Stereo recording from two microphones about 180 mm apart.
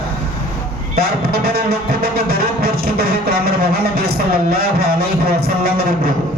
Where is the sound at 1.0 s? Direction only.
60° right (ahead or behind).